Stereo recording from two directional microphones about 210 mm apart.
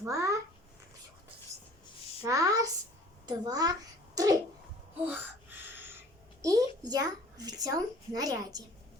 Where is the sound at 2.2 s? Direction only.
15° right (ahead or behind).